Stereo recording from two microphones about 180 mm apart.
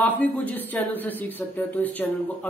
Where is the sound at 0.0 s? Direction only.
10° left (ahead or behind).